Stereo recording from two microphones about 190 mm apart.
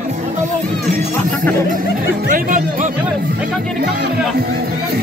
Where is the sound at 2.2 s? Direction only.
45° right (ahead or behind).